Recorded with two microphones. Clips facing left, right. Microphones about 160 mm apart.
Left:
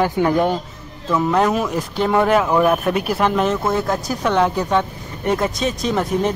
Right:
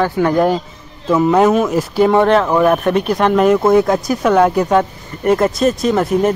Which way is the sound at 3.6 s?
15° right (ahead or behind).